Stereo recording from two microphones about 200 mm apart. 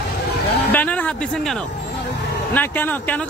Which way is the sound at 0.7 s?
5° left (ahead or behind).